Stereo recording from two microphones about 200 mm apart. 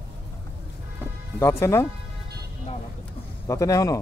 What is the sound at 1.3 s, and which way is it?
Speech, 15° left (ahead or behind).